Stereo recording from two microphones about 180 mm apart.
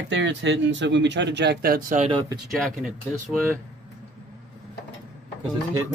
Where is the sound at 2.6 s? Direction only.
Centre (ahead or behind).